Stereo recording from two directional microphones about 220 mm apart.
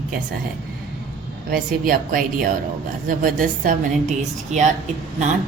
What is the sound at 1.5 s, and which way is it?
A woman's voice, 40° right (ahead or behind).